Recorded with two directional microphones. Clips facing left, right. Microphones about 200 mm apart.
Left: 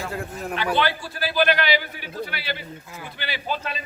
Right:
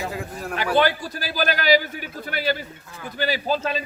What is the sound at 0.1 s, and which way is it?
Speech, centre (ahead or behind).